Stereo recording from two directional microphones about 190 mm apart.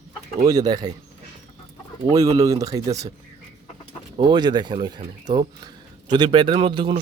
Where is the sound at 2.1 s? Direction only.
20° right (ahead or behind).